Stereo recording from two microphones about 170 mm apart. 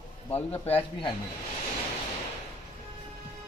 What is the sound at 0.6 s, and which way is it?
Speech, 35° left (ahead or behind).